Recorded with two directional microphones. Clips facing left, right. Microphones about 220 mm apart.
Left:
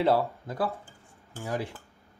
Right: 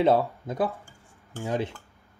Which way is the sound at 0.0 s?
20° right (ahead or behind).